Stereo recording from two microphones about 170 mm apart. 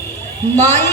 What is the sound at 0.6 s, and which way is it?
Speech, 15° left (ahead or behind).